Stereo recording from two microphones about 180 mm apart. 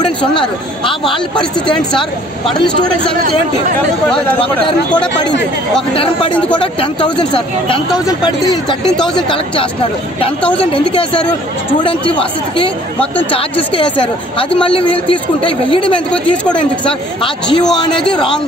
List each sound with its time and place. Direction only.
0.3 s speech: 25° left (ahead or behind)
1.8 s speech: 5° left (ahead or behind)
6.6 s speech: 30° left (ahead or behind)
10.6 s speech: 30° left (ahead or behind)